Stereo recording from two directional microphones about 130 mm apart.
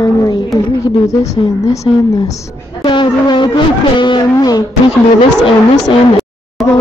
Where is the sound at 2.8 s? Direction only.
35° left (ahead or behind).